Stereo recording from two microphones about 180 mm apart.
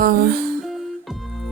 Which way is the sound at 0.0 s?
55° right (ahead or behind).